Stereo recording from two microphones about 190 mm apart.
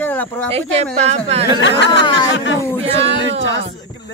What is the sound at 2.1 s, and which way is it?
Speech, 20° left (ahead or behind).